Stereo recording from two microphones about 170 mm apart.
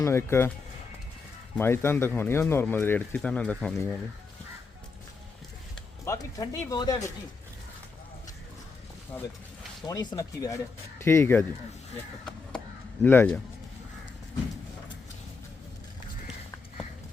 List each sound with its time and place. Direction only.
0.0 s speech: 15° left (ahead or behind)
1.5 s speech: 15° left (ahead or behind)
6.1 s speech: 20° left (ahead or behind)
9.8 s speech: 25° left (ahead or behind)
12.2 s a sound: 5° left (ahead or behind)